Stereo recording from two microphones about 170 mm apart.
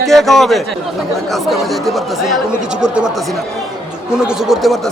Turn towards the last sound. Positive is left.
turn(degrees=0)  # may be behind; listen again after turning